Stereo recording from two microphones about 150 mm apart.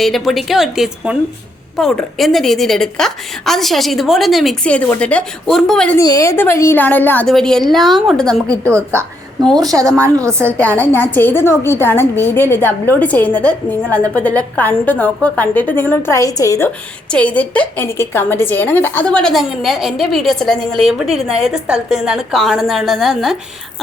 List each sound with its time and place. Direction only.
0.0 s a woman's voice: centre (ahead or behind)
6.0 s a woman's voice: 25° left (ahead or behind); by 8.5 s 5° left (ahead or behind)
8.6 s a woman's voice: 20° right (ahead or behind)
10.6 s a woman's voice: 10° left (ahead or behind)